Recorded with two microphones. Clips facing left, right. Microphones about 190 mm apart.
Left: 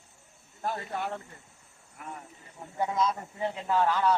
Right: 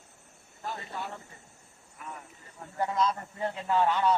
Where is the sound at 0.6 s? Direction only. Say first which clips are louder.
Left 5 dB; 50° left (ahead or behind).